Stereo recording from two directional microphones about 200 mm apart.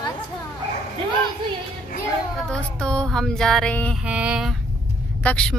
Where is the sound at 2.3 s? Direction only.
5° left (ahead or behind).